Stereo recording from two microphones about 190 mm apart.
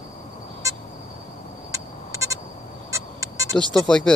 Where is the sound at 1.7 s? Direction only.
15° right (ahead or behind).